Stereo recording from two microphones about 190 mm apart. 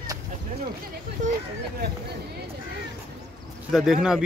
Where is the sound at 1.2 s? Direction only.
40° right (ahead or behind).